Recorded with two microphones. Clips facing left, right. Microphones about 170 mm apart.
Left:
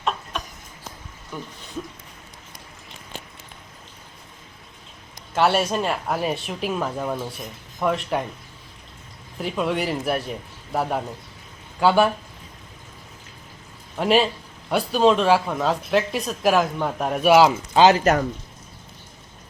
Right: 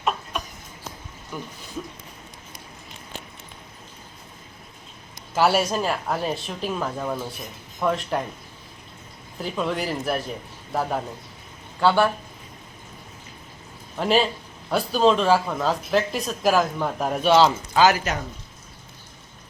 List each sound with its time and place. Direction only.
1.3 s speech: 5° right (ahead or behind)
5.3 s speech: 5° right (ahead or behind)
9.4 s a man's voice: centre (ahead or behind)
11.8 s speech: 15° left (ahead or behind)
13.9 s a man's voice: centre (ahead or behind)
17.7 s speech: 25° left (ahead or behind)